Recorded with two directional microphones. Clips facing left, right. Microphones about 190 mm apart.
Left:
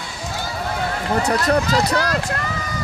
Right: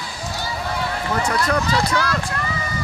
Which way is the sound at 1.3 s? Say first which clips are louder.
Left 3 dB; 35° left (ahead or behind).